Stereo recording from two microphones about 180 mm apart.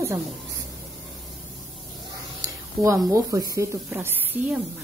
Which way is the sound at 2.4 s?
20° right (ahead or behind).